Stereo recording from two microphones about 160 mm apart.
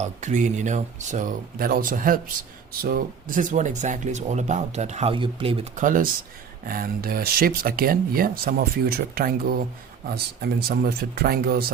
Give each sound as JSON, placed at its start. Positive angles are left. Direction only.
{"t": 0.0, "sound": "speech", "side_deg": -50}
{"t": 1.5, "sound": "speech", "side_deg": -70}
{"t": 5.7, "sound": "speech", "side_deg": -55}
{"t": 6.7, "sound": "speech", "side_deg": -65}
{"t": 10.4, "sound": "speech", "side_deg": -80}